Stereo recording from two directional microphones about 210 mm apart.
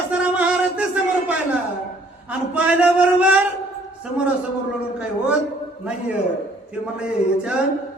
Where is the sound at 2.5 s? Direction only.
5° right (ahead or behind).